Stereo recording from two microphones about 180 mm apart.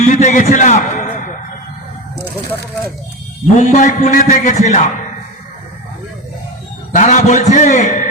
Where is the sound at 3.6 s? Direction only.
45° left (ahead or behind).